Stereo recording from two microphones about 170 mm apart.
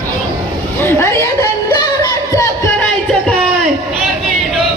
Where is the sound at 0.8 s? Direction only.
15° left (ahead or behind).